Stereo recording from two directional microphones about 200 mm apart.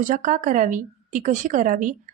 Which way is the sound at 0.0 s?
40° right (ahead or behind).